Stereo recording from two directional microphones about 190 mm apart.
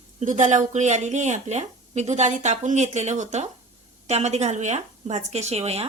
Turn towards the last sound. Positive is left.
turn(degrees=-35)  # may be behind; listen again after turning